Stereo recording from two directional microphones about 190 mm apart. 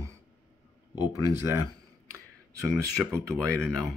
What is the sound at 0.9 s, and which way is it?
Speech, 20° left (ahead or behind).